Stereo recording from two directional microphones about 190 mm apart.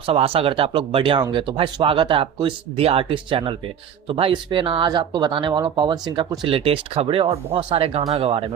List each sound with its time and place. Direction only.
0.0 s speech: 30° right (ahead or behind)